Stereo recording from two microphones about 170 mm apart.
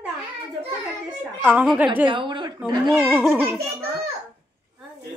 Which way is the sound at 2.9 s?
10° right (ahead or behind).